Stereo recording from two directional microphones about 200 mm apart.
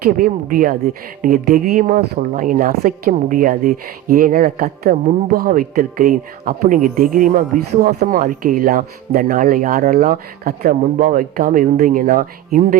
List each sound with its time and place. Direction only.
0.0 s speech: 45° right (ahead or behind)